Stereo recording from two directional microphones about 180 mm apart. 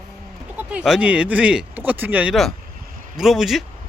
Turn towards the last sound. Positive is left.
turn(degrees=0)  # may be behind; listen again after turning